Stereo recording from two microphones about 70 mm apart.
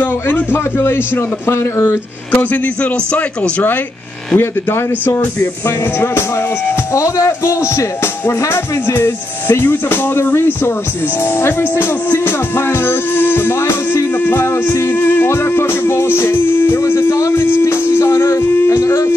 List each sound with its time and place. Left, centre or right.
0.0 s music: left
2.3 s a man's voice: left
4.4 s music: left